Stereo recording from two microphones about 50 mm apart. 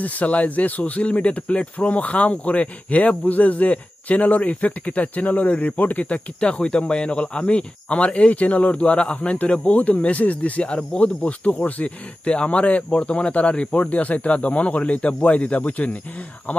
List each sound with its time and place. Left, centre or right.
0.0 s speech: left